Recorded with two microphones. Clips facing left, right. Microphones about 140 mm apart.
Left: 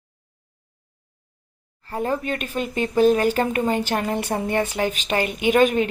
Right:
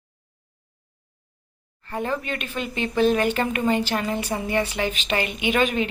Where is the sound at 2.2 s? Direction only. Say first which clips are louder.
Left 3 dB; 40° left (ahead or behind).